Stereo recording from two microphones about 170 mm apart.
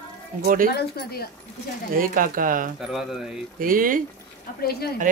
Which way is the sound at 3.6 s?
55° right (ahead or behind).